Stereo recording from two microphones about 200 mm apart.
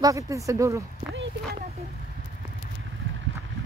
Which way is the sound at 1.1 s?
65° right (ahead or behind).